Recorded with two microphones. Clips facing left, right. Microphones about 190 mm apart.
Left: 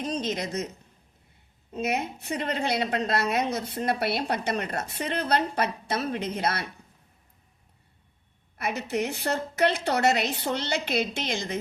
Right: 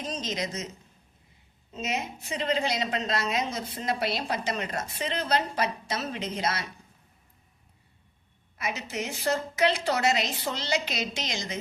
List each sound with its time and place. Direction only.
0.0 s a woman's voice: 60° left (ahead or behind)
1.7 s a woman's voice: 60° left (ahead or behind)
8.5 s a woman's voice: 60° left (ahead or behind)